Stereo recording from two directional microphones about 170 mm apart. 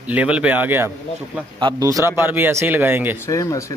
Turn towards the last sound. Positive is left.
turn(degrees=20)  # may be behind; listen again after turning